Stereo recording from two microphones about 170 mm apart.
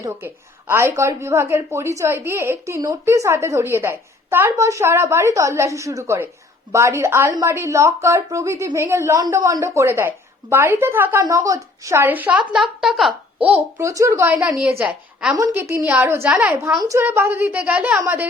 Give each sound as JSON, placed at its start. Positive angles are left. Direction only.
{"t": 0.0, "sound": "a woman's voice", "side_deg": -15}